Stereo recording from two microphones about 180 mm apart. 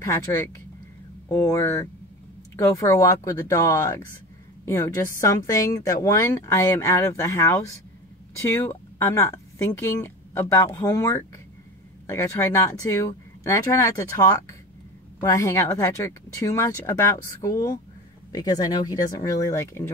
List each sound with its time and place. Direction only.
0.0 s speech: 15° left (ahead or behind)